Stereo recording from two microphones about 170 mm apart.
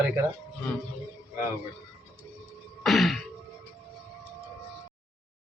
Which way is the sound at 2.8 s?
Centre (ahead or behind).